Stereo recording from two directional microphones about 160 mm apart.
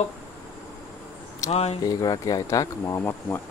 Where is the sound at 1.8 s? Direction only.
20° left (ahead or behind).